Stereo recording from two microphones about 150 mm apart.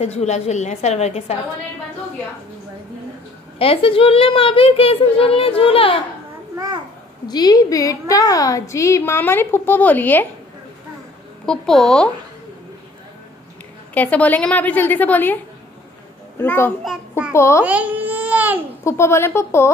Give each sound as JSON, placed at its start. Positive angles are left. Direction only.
{"t": 0.0, "sound": "a woman's voice", "side_deg": 45}
{"t": 3.5, "sound": "a child's voice", "side_deg": 40}
{"t": 6.5, "sound": "a child's voice", "side_deg": -25}
{"t": 7.2, "sound": "a woman's voice", "side_deg": 25}
{"t": 11.4, "sound": "a woman's voice", "side_deg": 5}
{"t": 13.9, "sound": "a woman's voice", "side_deg": 10}
{"t": 16.3, "sound": "a woman's voice", "side_deg": 15}
{"t": 17.6, "sound": "baby cry", "side_deg": -10}
{"t": 18.9, "sound": "a woman's voice", "side_deg": 15}